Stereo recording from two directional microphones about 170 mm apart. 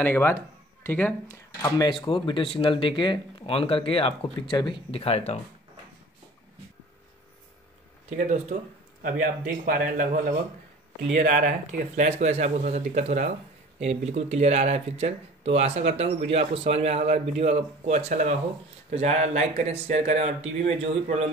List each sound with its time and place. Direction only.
0.0 s speech: 15° left (ahead or behind)
1.8 s speech: 30° left (ahead or behind)
8.2 s speech: 45° right (ahead or behind)